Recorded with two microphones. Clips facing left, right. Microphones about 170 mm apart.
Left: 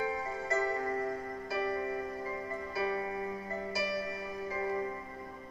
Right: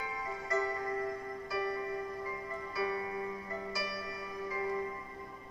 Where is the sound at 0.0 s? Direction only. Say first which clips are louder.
Left 6 dB; 30° left (ahead or behind).